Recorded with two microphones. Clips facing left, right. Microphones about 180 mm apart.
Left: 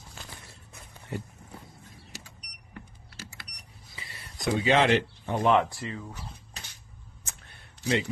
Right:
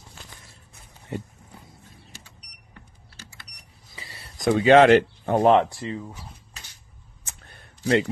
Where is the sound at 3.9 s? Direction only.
35° right (ahead or behind).